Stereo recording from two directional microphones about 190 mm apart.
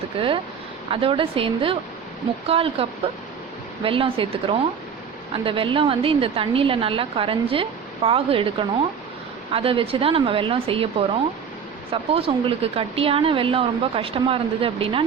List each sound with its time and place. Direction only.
0.2 s a woman's voice: 30° right (ahead or behind)
11.9 s a woman's voice: 30° right (ahead or behind)